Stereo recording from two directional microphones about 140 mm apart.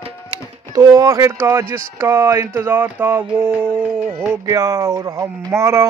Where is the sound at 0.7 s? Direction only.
25° right (ahead or behind).